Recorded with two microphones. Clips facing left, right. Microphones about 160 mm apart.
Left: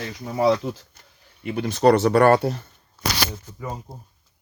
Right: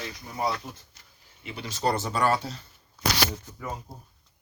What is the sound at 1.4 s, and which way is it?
Speech, 55° left (ahead or behind).